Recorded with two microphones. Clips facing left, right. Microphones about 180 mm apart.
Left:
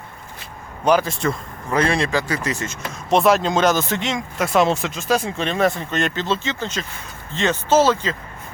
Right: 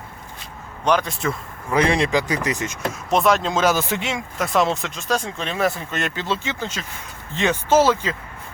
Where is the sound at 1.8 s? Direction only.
15° right (ahead or behind).